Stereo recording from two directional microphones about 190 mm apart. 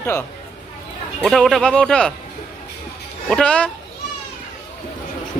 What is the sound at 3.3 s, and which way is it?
Speech, 5° left (ahead or behind).